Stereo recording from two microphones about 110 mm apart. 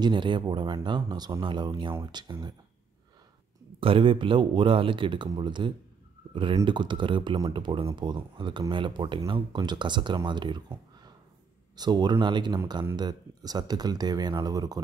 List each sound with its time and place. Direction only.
0.0 s speech: 45° right (ahead or behind)
3.8 s speech: 55° right (ahead or behind)
11.7 s speech: 40° right (ahead or behind)